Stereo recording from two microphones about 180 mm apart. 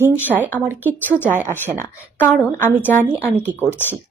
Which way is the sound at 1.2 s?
10° right (ahead or behind).